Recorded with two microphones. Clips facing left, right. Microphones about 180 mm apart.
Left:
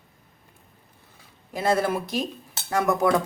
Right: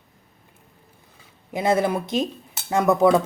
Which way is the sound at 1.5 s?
20° right (ahead or behind).